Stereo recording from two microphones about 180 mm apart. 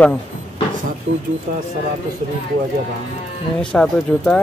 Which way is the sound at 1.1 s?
90° right.